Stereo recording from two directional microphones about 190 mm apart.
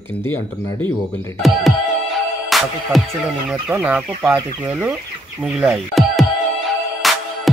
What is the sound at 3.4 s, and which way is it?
Speech, 5° right (ahead or behind).